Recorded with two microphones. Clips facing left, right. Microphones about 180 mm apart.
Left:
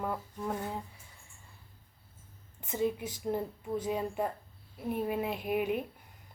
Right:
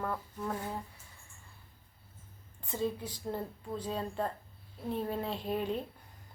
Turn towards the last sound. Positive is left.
turn(degrees=15)  # may be behind; listen again after turning